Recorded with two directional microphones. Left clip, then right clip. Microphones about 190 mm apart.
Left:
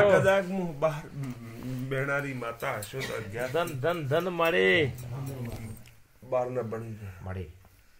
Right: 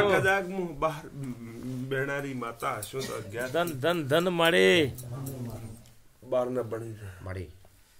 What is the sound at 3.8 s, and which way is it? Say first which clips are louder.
Speech: right 4 dB; 50° right (ahead or behind).